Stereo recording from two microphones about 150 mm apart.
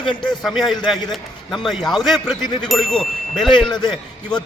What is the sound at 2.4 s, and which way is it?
Speech, 30° left (ahead or behind).